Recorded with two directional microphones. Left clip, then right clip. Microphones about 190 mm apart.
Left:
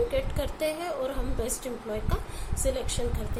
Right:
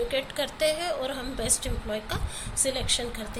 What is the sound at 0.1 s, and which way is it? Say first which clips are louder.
A woman's voice: right 1 dB; 10° left (ahead or behind).